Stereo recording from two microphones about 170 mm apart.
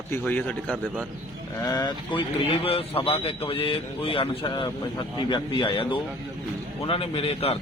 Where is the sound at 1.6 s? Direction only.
20° left (ahead or behind).